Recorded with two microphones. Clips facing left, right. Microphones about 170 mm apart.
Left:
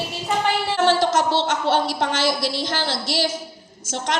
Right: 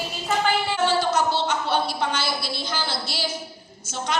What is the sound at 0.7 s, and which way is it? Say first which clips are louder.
A woman's voice: left 6 dB; 90° left.